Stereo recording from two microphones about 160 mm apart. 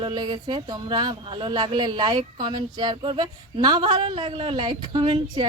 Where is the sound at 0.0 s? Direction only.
30° right (ahead or behind).